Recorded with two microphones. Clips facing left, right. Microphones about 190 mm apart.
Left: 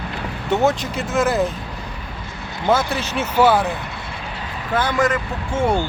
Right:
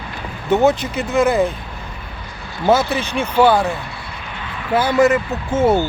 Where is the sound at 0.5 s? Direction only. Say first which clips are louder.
Right 4 dB; centre (ahead or behind).